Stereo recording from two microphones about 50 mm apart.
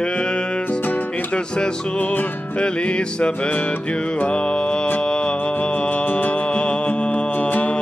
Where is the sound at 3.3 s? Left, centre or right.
Left.